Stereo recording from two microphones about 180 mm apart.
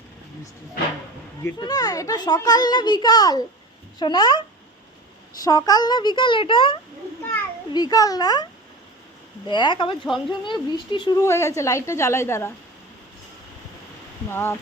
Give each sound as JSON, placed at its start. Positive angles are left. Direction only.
{"t": 1.5, "sound": "a child's voice", "side_deg": 20}
{"t": 9.5, "sound": "a child's voice", "side_deg": 25}
{"t": 14.3, "sound": "a woman's voice", "side_deg": 15}